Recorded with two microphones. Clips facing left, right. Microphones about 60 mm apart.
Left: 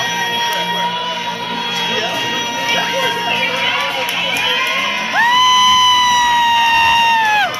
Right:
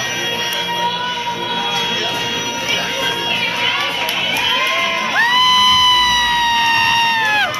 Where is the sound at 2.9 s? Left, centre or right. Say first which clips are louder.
Left 3 dB; centre.